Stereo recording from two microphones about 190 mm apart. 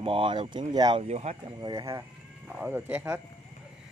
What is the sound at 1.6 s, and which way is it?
Speech, 15° right (ahead or behind).